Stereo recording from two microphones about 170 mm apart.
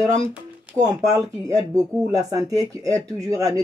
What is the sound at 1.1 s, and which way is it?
Speech, 20° right (ahead or behind).